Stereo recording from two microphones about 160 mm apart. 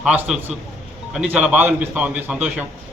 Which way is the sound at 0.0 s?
5° right (ahead or behind).